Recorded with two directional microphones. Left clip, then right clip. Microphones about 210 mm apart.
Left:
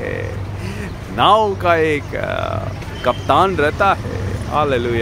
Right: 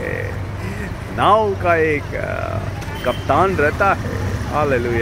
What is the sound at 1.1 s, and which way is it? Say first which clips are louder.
Speech: left 2 dB; 20° left (ahead or behind).